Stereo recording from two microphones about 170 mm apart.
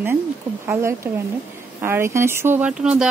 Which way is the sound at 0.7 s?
15° right (ahead or behind).